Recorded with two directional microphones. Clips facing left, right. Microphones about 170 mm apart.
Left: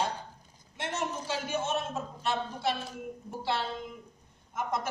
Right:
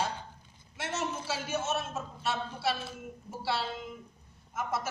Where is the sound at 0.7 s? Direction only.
5° right (ahead or behind).